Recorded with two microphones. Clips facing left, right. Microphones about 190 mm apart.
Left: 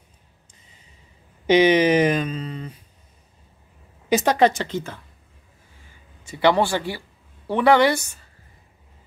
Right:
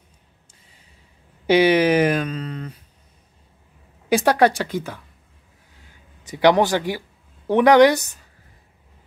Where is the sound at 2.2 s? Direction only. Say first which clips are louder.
Right 1 dB; 5° left (ahead or behind).